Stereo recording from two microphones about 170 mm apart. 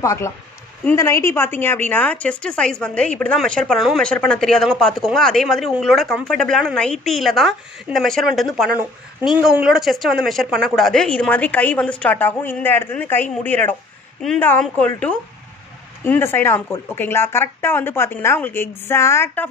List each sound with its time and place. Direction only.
0.0 s a woman's voice: 15° left (ahead or behind)